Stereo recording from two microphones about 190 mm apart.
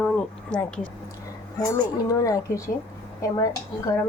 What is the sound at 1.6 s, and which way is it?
Speech, 20° left (ahead or behind).